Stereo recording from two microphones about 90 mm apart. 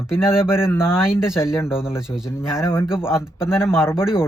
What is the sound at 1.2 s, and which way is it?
Speech, 5° right (ahead or behind).